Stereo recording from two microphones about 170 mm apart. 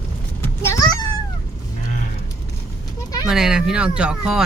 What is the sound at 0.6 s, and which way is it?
Speech, 20° left (ahead or behind).